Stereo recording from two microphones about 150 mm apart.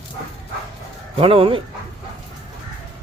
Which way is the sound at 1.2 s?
35° right (ahead or behind).